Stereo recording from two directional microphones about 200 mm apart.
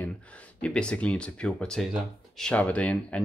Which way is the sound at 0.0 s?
5° left (ahead or behind).